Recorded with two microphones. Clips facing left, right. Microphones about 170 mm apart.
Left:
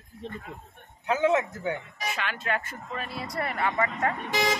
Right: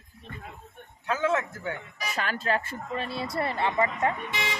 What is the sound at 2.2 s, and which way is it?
Speech, 35° right (ahead or behind).